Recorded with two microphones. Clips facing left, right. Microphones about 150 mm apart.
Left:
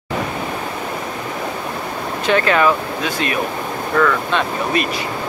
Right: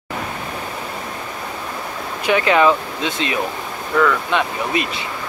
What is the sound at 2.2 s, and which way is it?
Speech, 15° right (ahead or behind).